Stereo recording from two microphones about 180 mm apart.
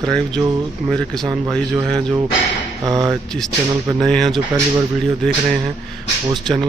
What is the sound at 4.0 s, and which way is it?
Speech, centre (ahead or behind).